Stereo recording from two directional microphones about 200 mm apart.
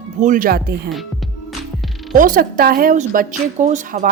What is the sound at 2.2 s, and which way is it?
Speech, 45° right (ahead or behind).